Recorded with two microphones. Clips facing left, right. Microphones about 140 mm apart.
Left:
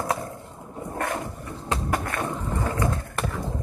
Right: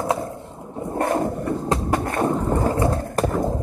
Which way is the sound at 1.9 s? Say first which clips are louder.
Right 9 dB; 35° right (ahead or behind).